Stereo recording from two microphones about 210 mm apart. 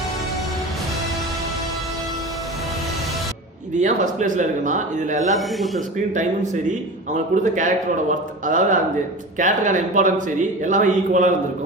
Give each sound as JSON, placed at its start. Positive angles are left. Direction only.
{"t": 3.8, "sound": "a man's voice", "side_deg": -35}
{"t": 5.4, "sound": "speech", "side_deg": 0}
{"t": 6.1, "sound": "a man's voice", "side_deg": -35}